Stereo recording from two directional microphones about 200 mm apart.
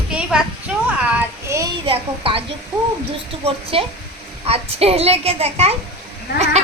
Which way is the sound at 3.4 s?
30° right (ahead or behind).